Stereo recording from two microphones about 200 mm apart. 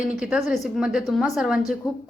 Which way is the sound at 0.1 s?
5° right (ahead or behind).